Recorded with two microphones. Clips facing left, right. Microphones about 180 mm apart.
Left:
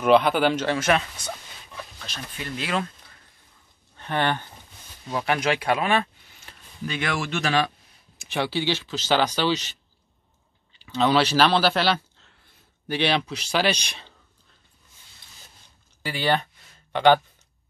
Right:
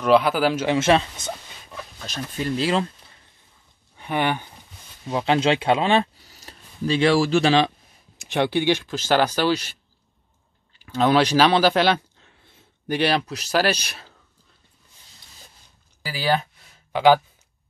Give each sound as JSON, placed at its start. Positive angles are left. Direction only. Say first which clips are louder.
{"t": 0.0, "sound": "speech", "louder": "even", "side_deg": 0}
{"t": 0.7, "sound": "speech", "louder": "right 4 dB", "side_deg": -25}
{"t": 2.0, "sound": "speech", "louder": "right 10 dB", "side_deg": -40}
{"t": 3.9, "sound": "speech", "louder": "right 1 dB", "side_deg": -10}
{"t": 5.1, "sound": "speech", "louder": "right 4 dB", "side_deg": -25}
{"t": 10.9, "sound": "speech", "louder": "right 2 dB", "side_deg": -10}
{"t": 16.0, "sound": "speech", "louder": "right 1 dB", "side_deg": -5}